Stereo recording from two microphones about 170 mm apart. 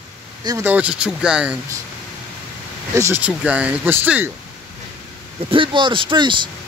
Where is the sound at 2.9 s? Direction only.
15° right (ahead or behind).